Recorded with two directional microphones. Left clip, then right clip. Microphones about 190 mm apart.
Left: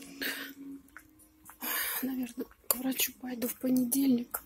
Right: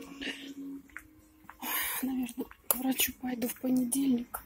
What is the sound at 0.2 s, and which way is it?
Hiccup, 30° left (ahead or behind).